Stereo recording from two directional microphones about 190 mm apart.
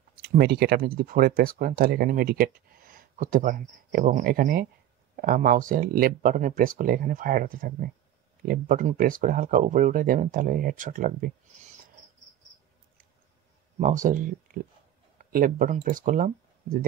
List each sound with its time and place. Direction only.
0.3 s speech: 55° right (ahead or behind)
13.7 s speech: 40° right (ahead or behind)